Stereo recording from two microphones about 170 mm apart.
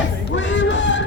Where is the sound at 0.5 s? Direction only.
90° left.